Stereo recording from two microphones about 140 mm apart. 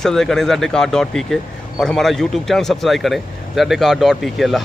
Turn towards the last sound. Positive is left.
turn(degrees=0)  # may be behind; listen again after turning